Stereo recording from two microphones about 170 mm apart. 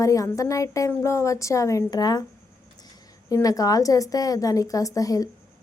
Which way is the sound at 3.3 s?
20° left (ahead or behind).